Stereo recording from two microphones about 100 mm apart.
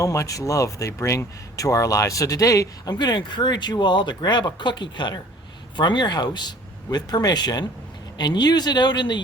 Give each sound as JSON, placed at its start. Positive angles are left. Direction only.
{"t": 0.0, "sound": "speech", "side_deg": 35}